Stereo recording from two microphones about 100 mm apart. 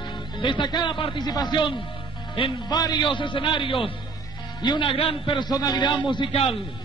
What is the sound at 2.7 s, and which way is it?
Speech, 45° left (ahead or behind).